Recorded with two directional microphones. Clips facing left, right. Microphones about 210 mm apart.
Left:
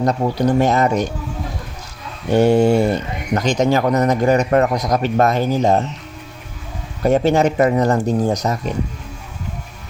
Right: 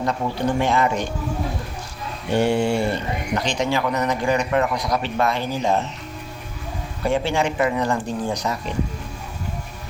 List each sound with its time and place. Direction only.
0.0 s speech: 40° left (ahead or behind)
2.3 s speech: 40° left (ahead or behind)
7.0 s speech: 40° left (ahead or behind)